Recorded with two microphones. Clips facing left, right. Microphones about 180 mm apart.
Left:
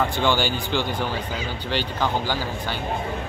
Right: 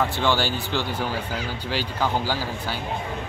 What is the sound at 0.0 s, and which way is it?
Speech, centre (ahead or behind).